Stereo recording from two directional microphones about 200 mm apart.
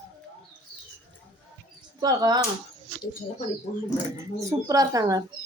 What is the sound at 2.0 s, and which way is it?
Speech, 20° right (ahead or behind).